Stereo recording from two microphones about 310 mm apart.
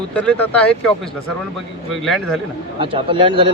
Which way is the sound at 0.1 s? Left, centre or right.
Centre.